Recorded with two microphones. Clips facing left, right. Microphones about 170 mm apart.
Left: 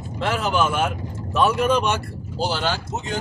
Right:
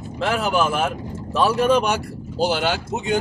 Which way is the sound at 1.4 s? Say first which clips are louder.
Right 1 dB; 30° right (ahead or behind).